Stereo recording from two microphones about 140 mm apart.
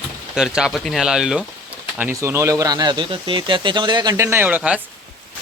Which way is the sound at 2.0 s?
15° right (ahead or behind).